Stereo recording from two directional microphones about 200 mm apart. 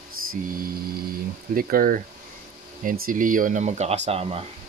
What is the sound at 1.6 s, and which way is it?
Speech, 45° right (ahead or behind).